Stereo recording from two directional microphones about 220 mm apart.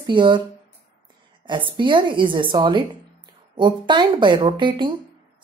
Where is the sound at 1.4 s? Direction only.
20° right (ahead or behind).